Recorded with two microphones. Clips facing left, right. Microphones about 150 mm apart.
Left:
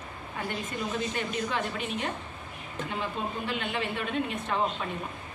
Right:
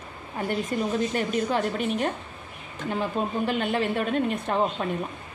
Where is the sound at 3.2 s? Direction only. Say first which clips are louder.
Right 7 dB; 45° right (ahead or behind).